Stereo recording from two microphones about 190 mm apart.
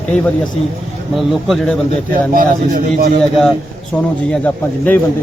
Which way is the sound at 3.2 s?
Centre (ahead or behind).